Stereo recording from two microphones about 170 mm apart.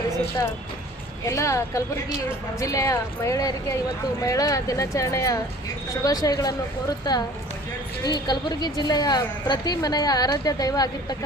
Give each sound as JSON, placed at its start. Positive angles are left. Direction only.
{"t": 1.2, "sound": "a woman's voice", "side_deg": 20}